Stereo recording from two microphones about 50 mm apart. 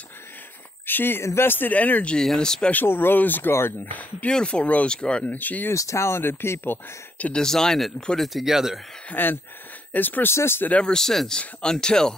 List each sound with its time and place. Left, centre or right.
0.8 s speech: left
1.2 s speech: left
1.7 s speech: left
2.2 s speech: centre
2.7 s speech: left
4.3 s speech: centre
5.2 s speech: left
5.7 s speech: left
7.3 s speech: centre
9.1 s speech: left
10.3 s speech: left
10.8 s speech: centre